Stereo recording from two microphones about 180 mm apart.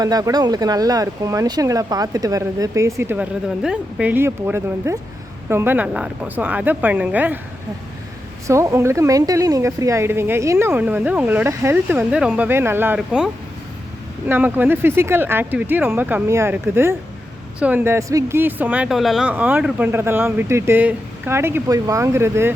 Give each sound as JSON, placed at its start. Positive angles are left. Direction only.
{"t": 0.0, "sound": "speech", "side_deg": -20}
{"t": 8.4, "sound": "speech", "side_deg": -15}